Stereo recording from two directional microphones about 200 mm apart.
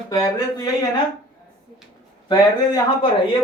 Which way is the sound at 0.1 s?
20° left (ahead or behind).